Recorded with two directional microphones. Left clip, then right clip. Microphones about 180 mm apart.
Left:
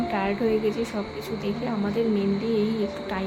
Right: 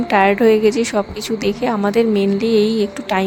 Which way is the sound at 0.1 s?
65° right (ahead or behind).